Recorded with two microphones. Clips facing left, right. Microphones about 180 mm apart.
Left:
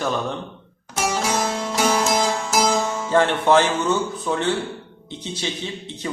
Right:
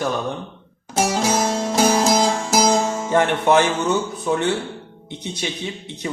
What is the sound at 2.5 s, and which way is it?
Music, 45° right (ahead or behind).